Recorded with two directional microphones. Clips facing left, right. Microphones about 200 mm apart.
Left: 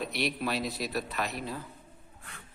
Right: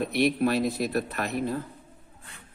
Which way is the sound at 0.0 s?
55° right (ahead or behind).